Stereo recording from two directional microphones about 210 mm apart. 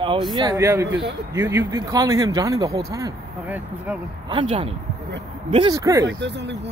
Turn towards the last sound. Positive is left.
turn(degrees=-55)  # may be behind; listen again after turning